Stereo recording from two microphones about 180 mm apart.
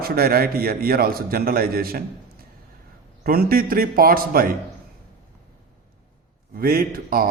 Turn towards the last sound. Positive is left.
turn(degrees=-55)  # may be behind; listen again after turning